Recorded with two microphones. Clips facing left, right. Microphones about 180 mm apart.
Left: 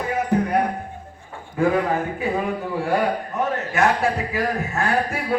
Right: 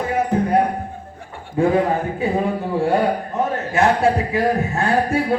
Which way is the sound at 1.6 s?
30° right (ahead or behind).